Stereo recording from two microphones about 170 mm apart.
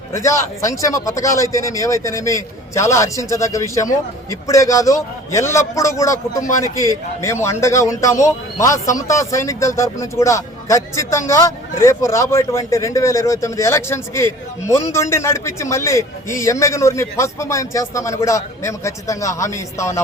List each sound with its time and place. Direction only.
0.1 s speech: 15° left (ahead or behind)